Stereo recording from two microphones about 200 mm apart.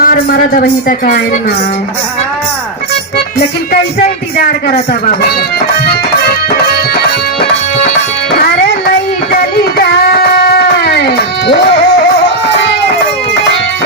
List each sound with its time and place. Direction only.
0.0 s speech: 45° left (ahead or behind)
3.2 s music: 55° left (ahead or behind)
9.3 s music: 50° left (ahead or behind)